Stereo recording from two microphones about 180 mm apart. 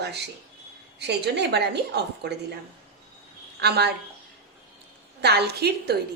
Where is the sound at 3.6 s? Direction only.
65° right (ahead or behind).